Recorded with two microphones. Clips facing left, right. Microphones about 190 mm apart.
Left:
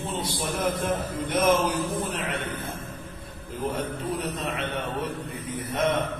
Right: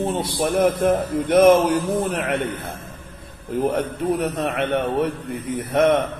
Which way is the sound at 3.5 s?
60° right (ahead or behind).